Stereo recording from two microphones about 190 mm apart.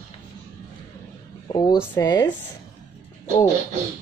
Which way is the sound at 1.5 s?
20° left (ahead or behind).